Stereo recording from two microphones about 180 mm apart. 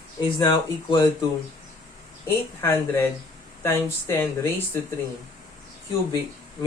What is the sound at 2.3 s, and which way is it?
Speech, 15° left (ahead or behind).